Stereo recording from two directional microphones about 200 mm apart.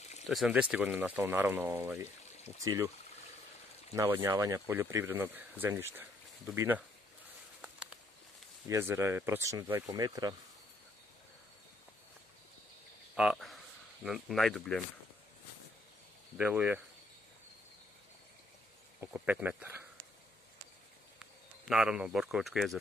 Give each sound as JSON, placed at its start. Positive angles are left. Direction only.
{"t": 0.3, "sound": "speech", "side_deg": -5}
{"t": 3.9, "sound": "speech", "side_deg": -10}
{"t": 8.6, "sound": "speech", "side_deg": -10}
{"t": 13.1, "sound": "speech", "side_deg": -5}
{"t": 16.3, "sound": "speech", "side_deg": -10}
{"t": 18.9, "sound": "speech", "side_deg": -10}
{"t": 21.6, "sound": "speech", "side_deg": -5}